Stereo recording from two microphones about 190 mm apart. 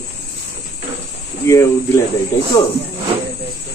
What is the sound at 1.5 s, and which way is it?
Speech, 15° left (ahead or behind).